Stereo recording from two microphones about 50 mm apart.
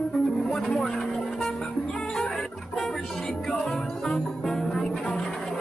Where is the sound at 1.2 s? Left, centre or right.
Centre.